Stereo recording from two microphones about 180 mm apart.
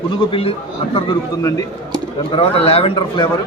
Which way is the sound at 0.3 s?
30° left (ahead or behind).